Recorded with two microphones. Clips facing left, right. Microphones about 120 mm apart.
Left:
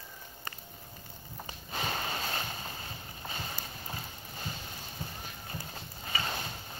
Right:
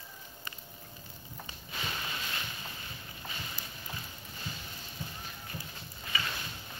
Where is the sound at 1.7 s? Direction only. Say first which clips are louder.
Left 5 dB; 40° left (ahead or behind).